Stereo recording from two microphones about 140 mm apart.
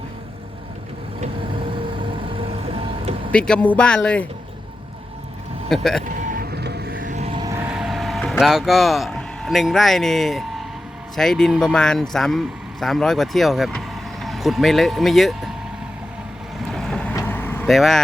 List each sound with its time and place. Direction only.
1.4 s vehicle: 35° right (ahead or behind)
3.3 s speech: 5° left (ahead or behind)
5.6 s speech: 5° left (ahead or behind)
6.1 s vehicle: 75° right (ahead or behind)
7.4 s vehicle: 20° right (ahead or behind)
7.7 s speech: centre (ahead or behind)
16.7 s boat: 5° left (ahead or behind)
17.2 s vehicle: 15° left (ahead or behind)
17.7 s speech: centre (ahead or behind)